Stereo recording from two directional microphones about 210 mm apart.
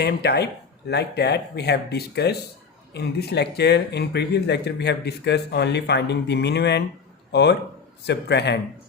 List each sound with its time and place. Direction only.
0.0 s a man's voice: 50° left (ahead or behind)